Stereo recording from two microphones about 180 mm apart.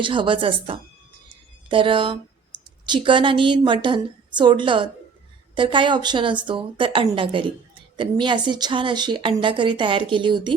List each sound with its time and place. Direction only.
0.0 s a woman's voice: 25° right (ahead or behind)